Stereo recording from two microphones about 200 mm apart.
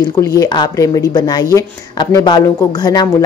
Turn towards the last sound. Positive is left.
turn(degrees=20)  # may be behind; listen again after turning